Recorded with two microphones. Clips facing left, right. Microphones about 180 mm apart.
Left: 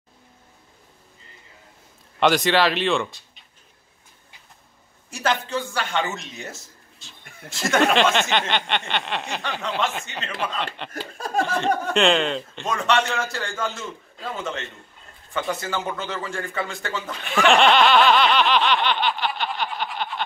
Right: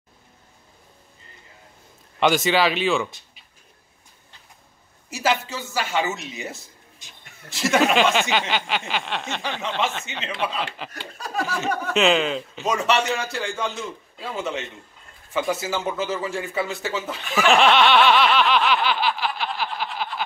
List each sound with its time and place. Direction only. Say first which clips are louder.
2.1 s speech: left 1 dB; centre (ahead or behind)
5.1 s speech: even; 5° right (ahead or behind)
7.0 s a sound: left 3 dB; 15° right (ahead or behind)
7.4 s speech: even; centre (ahead or behind)
10.9 s laughter: left 4 dB; 50° left (ahead or behind)
11.9 s speech: right 2 dB; 5° right (ahead or behind)
17.3 s snicker: left 1 dB; centre (ahead or behind)